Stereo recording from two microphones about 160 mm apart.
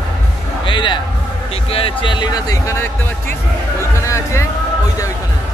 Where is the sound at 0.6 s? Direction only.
30° left (ahead or behind).